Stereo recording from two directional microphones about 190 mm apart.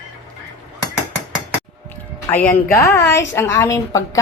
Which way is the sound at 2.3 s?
10° left (ahead or behind).